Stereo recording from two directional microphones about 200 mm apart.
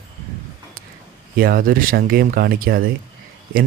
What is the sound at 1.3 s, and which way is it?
A man's voice, 45° right (ahead or behind).